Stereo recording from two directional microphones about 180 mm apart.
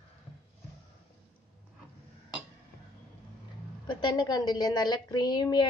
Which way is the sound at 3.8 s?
25° left (ahead or behind).